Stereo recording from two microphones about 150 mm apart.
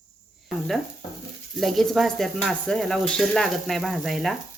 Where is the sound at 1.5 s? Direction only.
Centre (ahead or behind).